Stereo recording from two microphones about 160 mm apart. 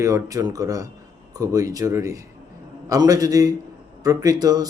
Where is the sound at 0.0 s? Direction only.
20° right (ahead or behind).